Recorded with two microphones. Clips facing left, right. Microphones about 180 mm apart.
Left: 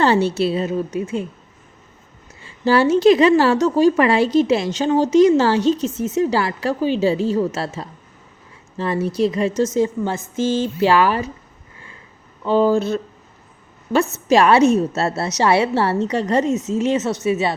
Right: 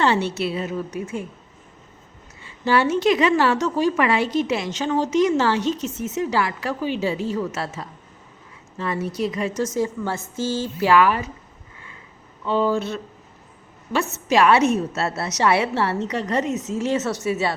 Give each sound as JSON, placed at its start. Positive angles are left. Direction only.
{"t": 0.0, "sound": "speech", "side_deg": 35}
{"t": 2.4, "sound": "a woman's voice", "side_deg": 35}
{"t": 12.5, "sound": "a woman's voice", "side_deg": 40}